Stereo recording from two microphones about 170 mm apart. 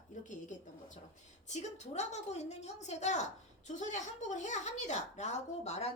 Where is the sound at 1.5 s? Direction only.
40° left (ahead or behind).